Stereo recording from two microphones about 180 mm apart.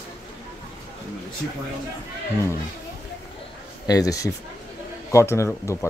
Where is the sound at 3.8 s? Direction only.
20° left (ahead or behind).